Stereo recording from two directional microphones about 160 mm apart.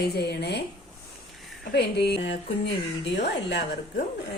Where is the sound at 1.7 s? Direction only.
90° left.